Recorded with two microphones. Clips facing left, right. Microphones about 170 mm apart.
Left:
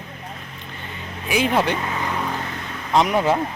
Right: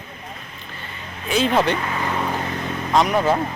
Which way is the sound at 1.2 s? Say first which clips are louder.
Right 1 dB; 10° left (ahead or behind).